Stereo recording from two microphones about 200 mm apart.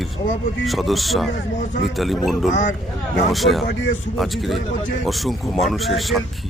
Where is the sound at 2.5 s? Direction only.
40° left (ahead or behind).